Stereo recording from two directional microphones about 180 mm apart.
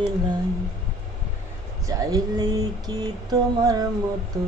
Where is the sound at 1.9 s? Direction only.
20° right (ahead or behind).